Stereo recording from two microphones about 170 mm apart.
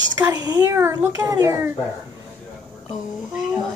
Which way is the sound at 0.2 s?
20° right (ahead or behind).